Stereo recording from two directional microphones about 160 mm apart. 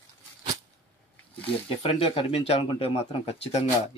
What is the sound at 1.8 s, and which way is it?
Speech, 35° left (ahead or behind).